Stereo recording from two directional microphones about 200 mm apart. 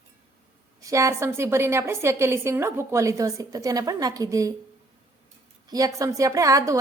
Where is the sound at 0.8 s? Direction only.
15° right (ahead or behind).